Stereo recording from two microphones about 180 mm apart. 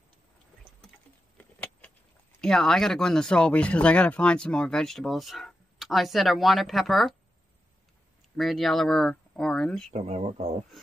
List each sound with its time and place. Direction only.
1.4 s vehicle: 5° left (ahead or behind)
2.4 s speech: 5° left (ahead or behind)
8.4 s speech: centre (ahead or behind)
9.8 s speech: 35° right (ahead or behind)